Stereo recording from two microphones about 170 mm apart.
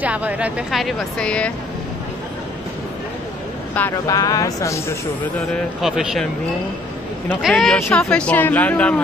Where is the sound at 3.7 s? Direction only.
10° left (ahead or behind).